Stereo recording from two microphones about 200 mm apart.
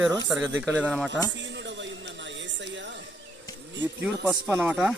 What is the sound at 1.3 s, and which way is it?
Music, 65° right (ahead or behind).